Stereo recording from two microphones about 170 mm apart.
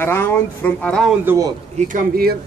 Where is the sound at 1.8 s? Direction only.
50° right (ahead or behind).